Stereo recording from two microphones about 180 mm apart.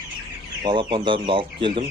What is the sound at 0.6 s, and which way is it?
Speech, 25° right (ahead or behind).